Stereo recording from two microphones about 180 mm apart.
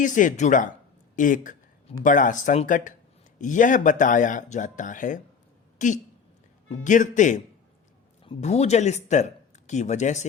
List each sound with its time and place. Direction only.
0.0 s speech: 45° left (ahead or behind)
1.1 s a sound: 45° left (ahead or behind)
2.0 s speech: 45° left (ahead or behind)
8.2 s speech: 35° left (ahead or behind)